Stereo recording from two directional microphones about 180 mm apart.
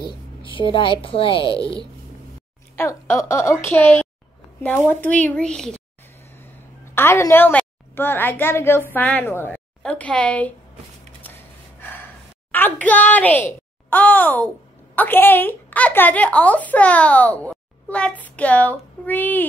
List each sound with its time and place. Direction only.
0.0 s a sound: 25° left (ahead or behind)
0.6 s a woman's voice: 30° left (ahead or behind)
1.6 s speech: 20° right (ahead or behind)
2.7 s a woman's voice: 15° left (ahead or behind)
6.8 s a woman's voice: 15° left (ahead or behind)
12.4 s a child's voice: 10° left (ahead or behind)